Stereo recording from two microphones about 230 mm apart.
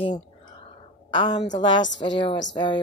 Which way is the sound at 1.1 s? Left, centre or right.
Centre.